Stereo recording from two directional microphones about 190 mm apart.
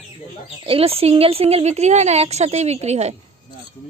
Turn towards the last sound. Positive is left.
turn(degrees=-35)  # may be behind; listen again after turning